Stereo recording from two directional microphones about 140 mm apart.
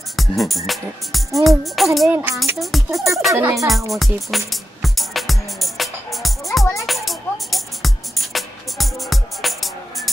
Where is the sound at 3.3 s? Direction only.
20° right (ahead or behind).